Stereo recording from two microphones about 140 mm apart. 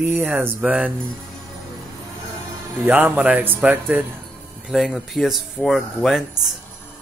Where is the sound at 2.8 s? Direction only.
10° right (ahead or behind).